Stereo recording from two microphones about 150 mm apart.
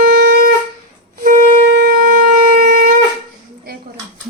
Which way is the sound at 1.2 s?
65° right (ahead or behind).